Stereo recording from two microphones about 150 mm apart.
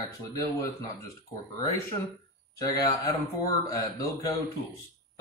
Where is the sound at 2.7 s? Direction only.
25° left (ahead or behind).